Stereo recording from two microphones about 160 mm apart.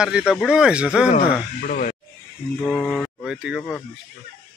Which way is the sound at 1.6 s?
55° left (ahead or behind).